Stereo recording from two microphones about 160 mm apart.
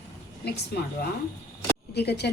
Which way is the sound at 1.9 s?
90° left.